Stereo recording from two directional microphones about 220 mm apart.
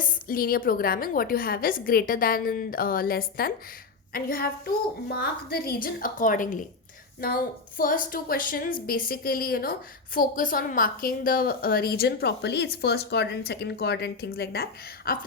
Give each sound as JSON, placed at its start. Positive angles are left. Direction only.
{"t": 0.0, "sound": "a woman's voice", "side_deg": 40}